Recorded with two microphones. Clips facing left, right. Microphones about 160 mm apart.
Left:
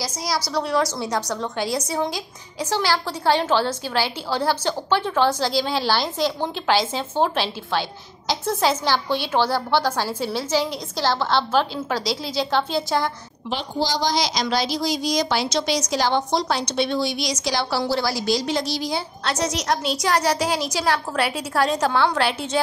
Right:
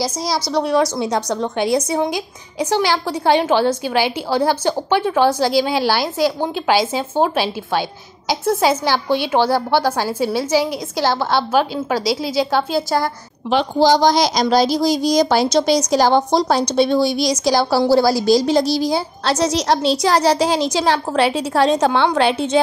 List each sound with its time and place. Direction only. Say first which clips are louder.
0.0 s a woman's voice: right 5 dB; 25° right (ahead or behind); by 13.1 s 5° right (ahead or behind)
13.5 s a woman's voice: right 10 dB; 60° right (ahead or behind); by 22.6 s 20° right (ahead or behind)